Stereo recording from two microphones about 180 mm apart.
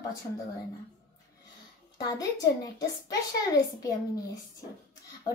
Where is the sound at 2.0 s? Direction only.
20° left (ahead or behind).